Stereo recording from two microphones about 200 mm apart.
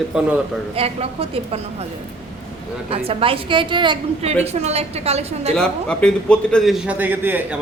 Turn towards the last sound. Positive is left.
turn(degrees=-10)  # may be behind; listen again after turning